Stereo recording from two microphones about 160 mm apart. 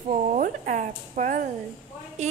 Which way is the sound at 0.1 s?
50° right (ahead or behind).